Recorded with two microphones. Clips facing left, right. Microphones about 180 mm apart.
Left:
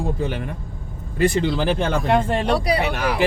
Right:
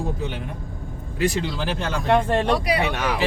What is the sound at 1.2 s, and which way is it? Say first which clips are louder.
Speech: left 5 dB; 55° left (ahead or behind).